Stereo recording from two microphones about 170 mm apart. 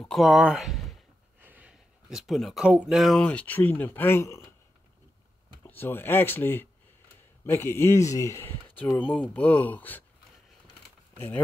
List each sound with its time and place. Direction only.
0.0 s speech: centre (ahead or behind)
5.7 s speech: 10° left (ahead or behind)
11.1 s speech: 10° left (ahead or behind)